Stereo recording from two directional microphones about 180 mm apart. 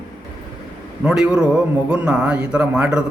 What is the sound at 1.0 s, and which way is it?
Speech, 5° right (ahead or behind).